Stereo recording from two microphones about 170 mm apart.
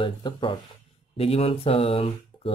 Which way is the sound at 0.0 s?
30° left (ahead or behind).